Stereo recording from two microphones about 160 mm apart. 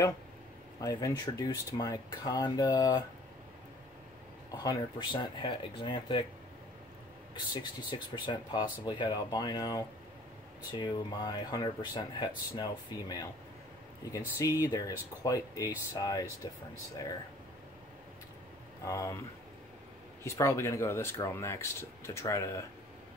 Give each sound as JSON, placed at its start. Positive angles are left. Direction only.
{"t": 0.7, "sound": "speech", "side_deg": 20}
{"t": 4.5, "sound": "speech", "side_deg": 25}
{"t": 7.3, "sound": "speech", "side_deg": 30}
{"t": 18.9, "sound": "speech", "side_deg": 20}
{"t": 20.2, "sound": "speech", "side_deg": 15}